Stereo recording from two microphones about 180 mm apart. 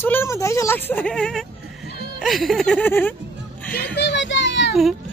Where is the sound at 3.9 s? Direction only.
75° left (ahead or behind).